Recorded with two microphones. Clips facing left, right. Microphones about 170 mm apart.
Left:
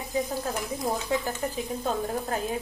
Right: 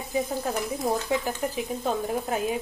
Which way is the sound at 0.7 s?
Centre (ahead or behind).